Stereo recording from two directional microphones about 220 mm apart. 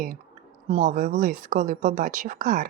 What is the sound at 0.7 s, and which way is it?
A woman's voice, 35° right (ahead or behind).